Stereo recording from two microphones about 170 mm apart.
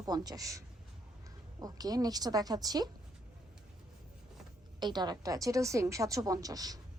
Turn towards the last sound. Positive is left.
turn(degrees=-20)  # may be behind; listen again after turning